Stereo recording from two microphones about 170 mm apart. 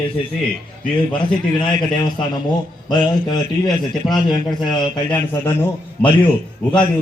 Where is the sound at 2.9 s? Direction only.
25° left (ahead or behind).